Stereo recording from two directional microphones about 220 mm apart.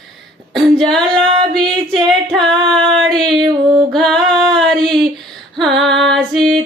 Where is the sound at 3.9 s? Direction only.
Centre (ahead or behind).